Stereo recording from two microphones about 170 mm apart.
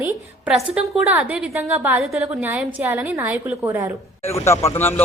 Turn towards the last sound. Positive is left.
turn(degrees=15)  # may be behind; listen again after turning